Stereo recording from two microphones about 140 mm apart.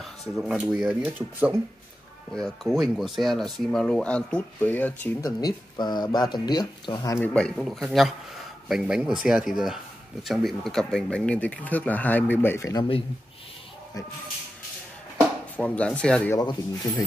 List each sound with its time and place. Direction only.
0.4 s speech: 5° right (ahead or behind)
2.3 s speech: centre (ahead or behind)
5.2 s speech: 30° left (ahead or behind)
7.2 s speech: 5° left (ahead or behind)
15.1 s speech: 10° left (ahead or behind)
16.3 s speech: 25° left (ahead or behind)